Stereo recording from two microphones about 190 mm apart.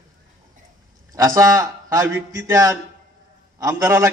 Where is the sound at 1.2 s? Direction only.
15° right (ahead or behind).